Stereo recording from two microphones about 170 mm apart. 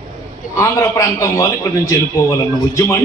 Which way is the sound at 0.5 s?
20° left (ahead or behind).